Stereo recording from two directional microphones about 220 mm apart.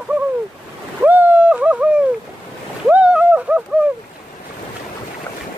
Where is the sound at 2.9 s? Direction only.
5° right (ahead or behind).